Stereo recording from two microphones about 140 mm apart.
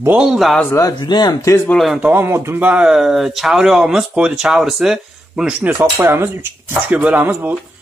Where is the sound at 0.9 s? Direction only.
30° left (ahead or behind).